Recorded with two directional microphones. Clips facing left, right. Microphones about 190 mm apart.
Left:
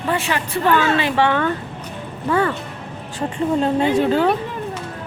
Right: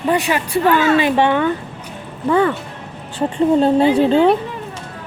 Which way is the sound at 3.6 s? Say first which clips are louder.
Right 3 dB; 30° right (ahead or behind).